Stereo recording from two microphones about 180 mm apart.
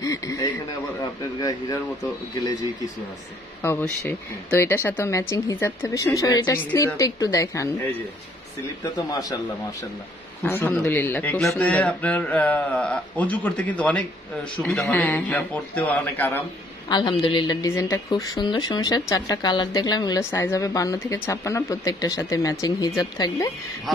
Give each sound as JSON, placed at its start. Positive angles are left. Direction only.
{"t": 0.0, "sound": "radio", "side_deg": 20}
{"t": 3.6, "sound": "speech", "side_deg": 15}
{"t": 8.8, "sound": "a woman's voice", "side_deg": 20}
{"t": 10.4, "sound": "speech", "side_deg": 10}
{"t": 16.9, "sound": "a woman's voice", "side_deg": 25}